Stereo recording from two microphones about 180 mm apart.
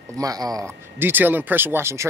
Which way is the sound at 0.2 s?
20° right (ahead or behind).